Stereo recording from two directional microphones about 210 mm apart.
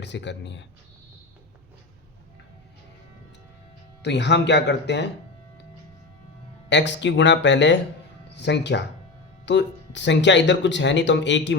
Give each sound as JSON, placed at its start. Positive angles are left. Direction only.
{"t": 0.0, "sound": "speech", "side_deg": 55}
{"t": 4.0, "sound": "speech", "side_deg": 55}
{"t": 6.7, "sound": "speech", "side_deg": 60}